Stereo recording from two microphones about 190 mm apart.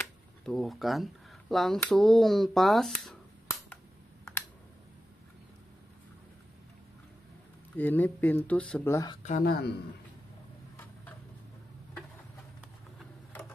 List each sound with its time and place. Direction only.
0.5 s speech: centre (ahead or behind)
3.4 s computer keyboard: 15° left (ahead or behind)
7.7 s speech: 10° left (ahead or behind)
9.4 s speech: 55° left (ahead or behind)